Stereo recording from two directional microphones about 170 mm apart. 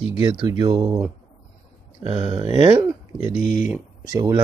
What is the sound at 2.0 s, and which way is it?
Speech, 30° right (ahead or behind).